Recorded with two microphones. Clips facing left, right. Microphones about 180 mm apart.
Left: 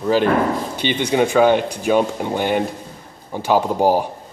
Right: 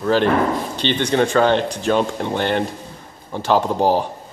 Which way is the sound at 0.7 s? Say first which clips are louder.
Even; 10° left (ahead or behind).